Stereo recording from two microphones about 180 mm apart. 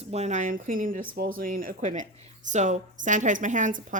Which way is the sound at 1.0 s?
90° right.